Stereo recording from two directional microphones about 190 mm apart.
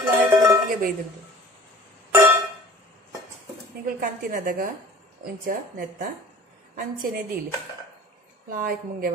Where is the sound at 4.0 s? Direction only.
45° right (ahead or behind).